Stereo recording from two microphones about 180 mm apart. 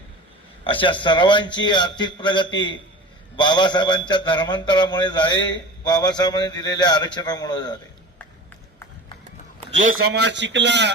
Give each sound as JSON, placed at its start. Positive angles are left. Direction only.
{"t": 0.6, "sound": "a man's voice", "side_deg": 30}
{"t": 9.6, "sound": "a sound", "side_deg": -40}
{"t": 10.2, "sound": "a man's voice", "side_deg": -75}